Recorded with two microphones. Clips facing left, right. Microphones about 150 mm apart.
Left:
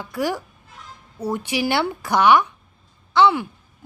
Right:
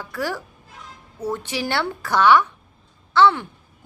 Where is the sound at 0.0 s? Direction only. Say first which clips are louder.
Left 3 dB; 15° left (ahead or behind).